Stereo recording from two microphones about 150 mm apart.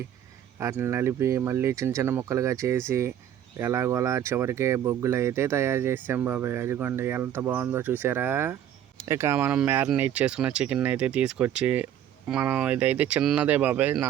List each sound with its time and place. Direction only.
0.6 s speech: 15° right (ahead or behind)